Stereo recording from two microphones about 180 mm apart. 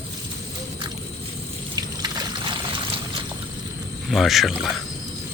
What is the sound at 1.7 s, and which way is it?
Water, 25° right (ahead or behind).